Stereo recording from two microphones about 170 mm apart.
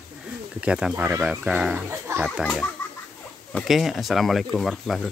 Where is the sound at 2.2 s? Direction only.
Centre (ahead or behind).